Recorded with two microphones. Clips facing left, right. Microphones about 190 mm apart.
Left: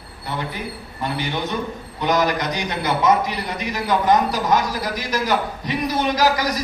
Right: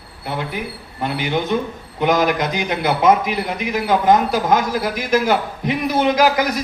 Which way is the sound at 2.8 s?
55° right (ahead or behind).